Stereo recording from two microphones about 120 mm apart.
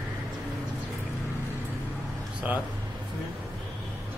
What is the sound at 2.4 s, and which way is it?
Speech, 10° right (ahead or behind).